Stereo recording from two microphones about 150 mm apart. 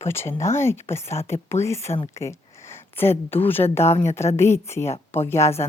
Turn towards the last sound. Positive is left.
turn(degrees=15)  # may be behind; listen again after turning